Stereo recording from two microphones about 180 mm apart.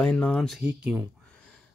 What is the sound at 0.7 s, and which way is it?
Speech, 10° right (ahead or behind).